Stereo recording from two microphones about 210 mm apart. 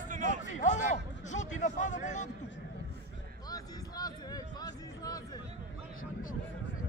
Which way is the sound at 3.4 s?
20° left (ahead or behind).